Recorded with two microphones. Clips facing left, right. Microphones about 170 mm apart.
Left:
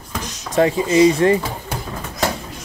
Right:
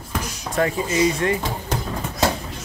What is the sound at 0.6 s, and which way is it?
Speech, 25° left (ahead or behind).